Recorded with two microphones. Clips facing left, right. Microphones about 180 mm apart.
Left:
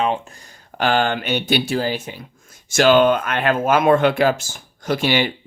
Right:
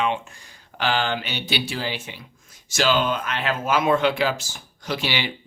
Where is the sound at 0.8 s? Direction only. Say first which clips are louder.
Left 5 dB; 50° left (ahead or behind).